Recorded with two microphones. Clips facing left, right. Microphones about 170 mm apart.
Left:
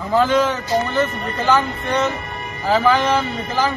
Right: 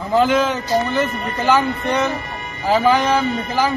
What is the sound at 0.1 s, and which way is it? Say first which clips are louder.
Speech: right 1 dB; 20° right (ahead or behind).